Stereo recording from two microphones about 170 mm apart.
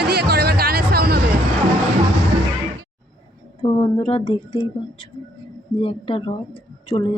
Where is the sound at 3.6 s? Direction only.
30° left (ahead or behind).